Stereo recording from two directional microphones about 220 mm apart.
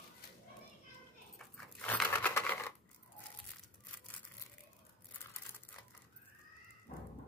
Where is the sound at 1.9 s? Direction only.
5° left (ahead or behind).